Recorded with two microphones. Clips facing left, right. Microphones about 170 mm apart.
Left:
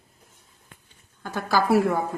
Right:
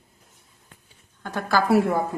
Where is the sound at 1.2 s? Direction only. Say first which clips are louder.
Right 1 dB; 5° left (ahead or behind).